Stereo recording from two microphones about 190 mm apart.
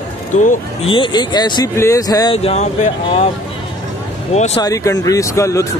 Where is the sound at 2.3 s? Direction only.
35° left (ahead or behind).